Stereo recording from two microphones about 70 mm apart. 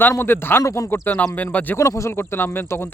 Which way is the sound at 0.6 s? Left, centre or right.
Left.